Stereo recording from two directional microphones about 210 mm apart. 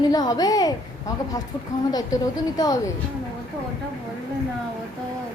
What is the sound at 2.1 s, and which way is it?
Speech, 15° left (ahead or behind).